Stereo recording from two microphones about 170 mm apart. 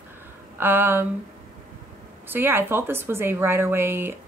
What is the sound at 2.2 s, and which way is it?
Speech, 15° right (ahead or behind).